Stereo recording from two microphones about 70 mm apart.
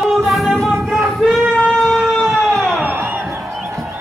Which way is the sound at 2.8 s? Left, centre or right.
Right.